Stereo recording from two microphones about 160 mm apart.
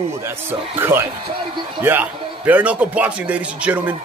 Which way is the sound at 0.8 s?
15° right (ahead or behind).